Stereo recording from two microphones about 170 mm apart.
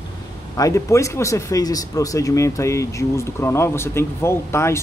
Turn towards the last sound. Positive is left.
turn(degrees=15)  # may be behind; listen again after turning